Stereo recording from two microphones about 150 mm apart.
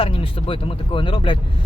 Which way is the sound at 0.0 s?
35° left (ahead or behind).